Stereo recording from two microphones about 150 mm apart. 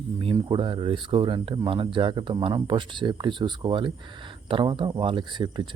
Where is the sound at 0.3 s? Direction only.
30° right (ahead or behind).